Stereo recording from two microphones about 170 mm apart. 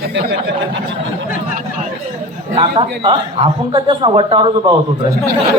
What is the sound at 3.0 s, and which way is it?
A man's voice, 30° right (ahead or behind).